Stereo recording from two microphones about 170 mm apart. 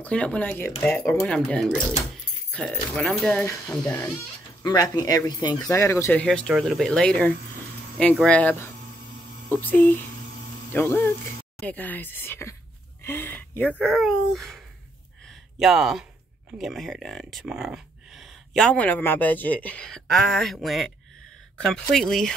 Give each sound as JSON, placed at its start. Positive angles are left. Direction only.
{"t": 0.0, "sound": "speech", "side_deg": 5}
{"t": 3.4, "sound": "speech", "side_deg": 15}
{"t": 6.2, "sound": "speech", "side_deg": 5}
{"t": 13.8, "sound": "speech", "side_deg": 0}